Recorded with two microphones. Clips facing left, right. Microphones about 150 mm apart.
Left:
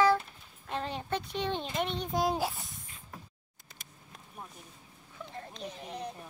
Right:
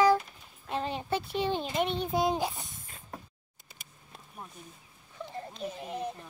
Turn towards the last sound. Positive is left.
turn(degrees=-5)  # may be behind; listen again after turning